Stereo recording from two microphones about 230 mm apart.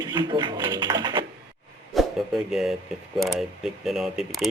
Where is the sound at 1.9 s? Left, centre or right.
Centre.